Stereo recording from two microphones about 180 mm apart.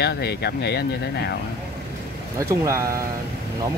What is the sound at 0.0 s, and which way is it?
Speech, 65° left (ahead or behind).